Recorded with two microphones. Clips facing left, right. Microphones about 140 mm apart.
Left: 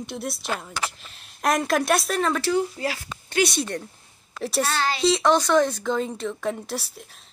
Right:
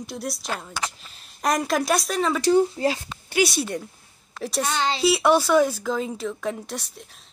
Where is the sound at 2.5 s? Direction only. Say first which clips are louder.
Right 5 dB; 25° right (ahead or behind).